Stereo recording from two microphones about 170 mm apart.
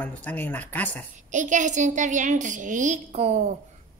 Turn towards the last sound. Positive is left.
turn(degrees=-40)  # may be behind; listen again after turning